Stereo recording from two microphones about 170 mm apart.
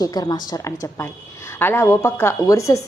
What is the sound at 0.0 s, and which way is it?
A woman's voice, 20° left (ahead or behind).